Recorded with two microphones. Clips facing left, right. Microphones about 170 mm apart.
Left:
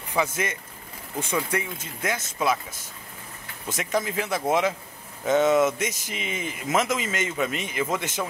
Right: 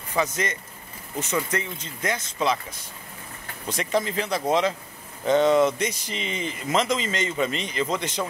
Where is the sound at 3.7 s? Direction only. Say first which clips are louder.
Right 1 dB; centre (ahead or behind).